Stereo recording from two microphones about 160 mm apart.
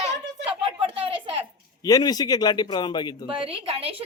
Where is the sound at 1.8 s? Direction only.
25° left (ahead or behind).